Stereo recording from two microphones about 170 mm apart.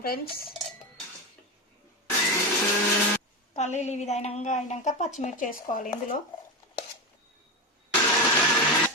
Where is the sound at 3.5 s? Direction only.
45° left (ahead or behind).